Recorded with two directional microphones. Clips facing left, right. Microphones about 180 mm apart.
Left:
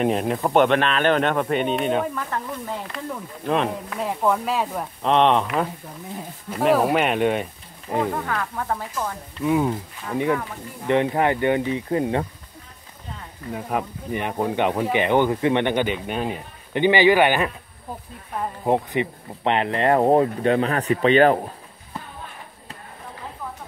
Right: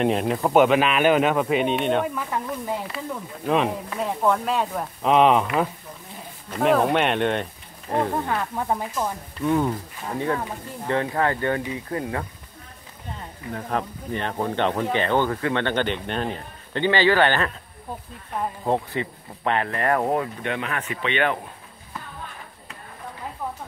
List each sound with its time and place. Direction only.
0.0 s a man's voice: centre (ahead or behind)
8.1 s speech: 20° right (ahead or behind)
9.4 s speech: 5° left (ahead or behind); by 12.3 s 25° left (ahead or behind)
13.5 s speech: 10° left (ahead or behind)
18.6 s speech: 15° left (ahead or behind); by 21.4 s 35° left (ahead or behind)